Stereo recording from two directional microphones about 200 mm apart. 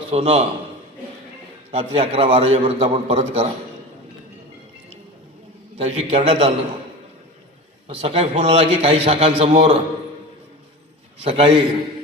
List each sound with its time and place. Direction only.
0.1 s a man's voice: 30° right (ahead or behind)
1.7 s a man's voice: 30° right (ahead or behind)
5.7 s a man's voice: 30° right (ahead or behind)
7.9 s a man's voice: 30° right (ahead or behind)
11.2 s a man's voice: 25° right (ahead or behind)